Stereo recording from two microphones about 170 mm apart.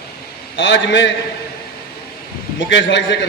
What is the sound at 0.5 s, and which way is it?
Speech, 90° left.